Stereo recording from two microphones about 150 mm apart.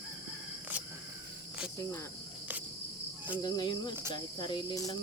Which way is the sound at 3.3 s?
25° left (ahead or behind).